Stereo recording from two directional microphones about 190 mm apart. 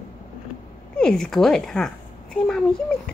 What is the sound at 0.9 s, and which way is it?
A child's voice, 5° left (ahead or behind).